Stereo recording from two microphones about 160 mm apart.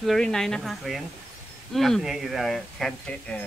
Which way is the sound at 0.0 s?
5° left (ahead or behind).